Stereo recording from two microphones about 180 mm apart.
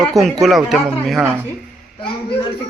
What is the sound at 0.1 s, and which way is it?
Speech, centre (ahead or behind).